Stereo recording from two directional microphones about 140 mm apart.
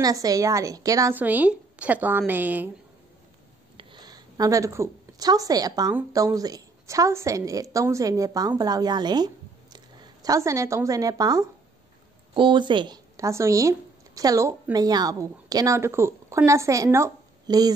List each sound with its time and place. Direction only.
0.0 s a woman's voice: 25° right (ahead or behind)
1.2 s a woman's voice: 10° right (ahead or behind)
3.7 s a sound: 30° right (ahead or behind)
6.1 s a woman's voice: 25° right (ahead or behind)